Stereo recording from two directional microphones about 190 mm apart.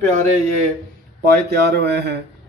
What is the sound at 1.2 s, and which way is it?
Speech, 60° right (ahead or behind).